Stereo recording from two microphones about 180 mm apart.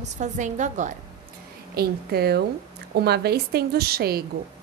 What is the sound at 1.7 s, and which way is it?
A woman's voice, 60° right (ahead or behind).